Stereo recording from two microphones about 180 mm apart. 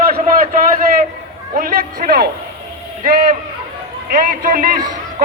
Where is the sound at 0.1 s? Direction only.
55° right (ahead or behind).